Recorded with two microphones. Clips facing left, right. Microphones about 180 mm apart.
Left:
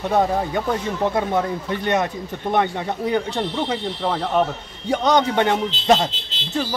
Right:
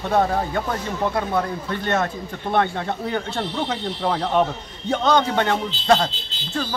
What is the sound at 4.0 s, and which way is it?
A man's voice, 5° left (ahead or behind).